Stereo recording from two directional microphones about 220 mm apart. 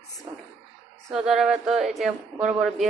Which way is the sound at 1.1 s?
Centre (ahead or behind).